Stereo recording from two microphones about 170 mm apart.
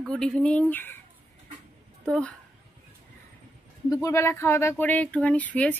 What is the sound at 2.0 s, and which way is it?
Speech, 5° left (ahead or behind).